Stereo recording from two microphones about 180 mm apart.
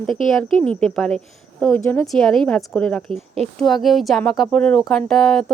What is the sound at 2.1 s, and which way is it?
A woman's voice, centre (ahead or behind).